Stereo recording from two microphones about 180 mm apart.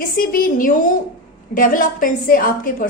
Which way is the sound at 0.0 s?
55° left (ahead or behind).